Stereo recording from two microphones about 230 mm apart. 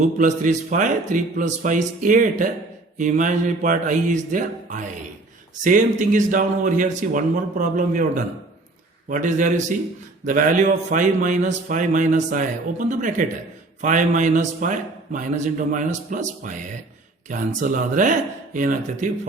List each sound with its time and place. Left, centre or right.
0.0 s a man's voice: right